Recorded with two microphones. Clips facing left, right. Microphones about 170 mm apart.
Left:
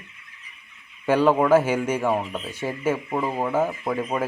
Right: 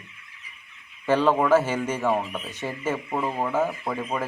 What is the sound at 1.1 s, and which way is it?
Speech, 10° left (ahead or behind).